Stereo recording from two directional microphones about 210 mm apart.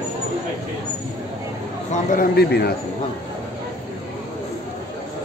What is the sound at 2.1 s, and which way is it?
Speech, 45° left (ahead or behind).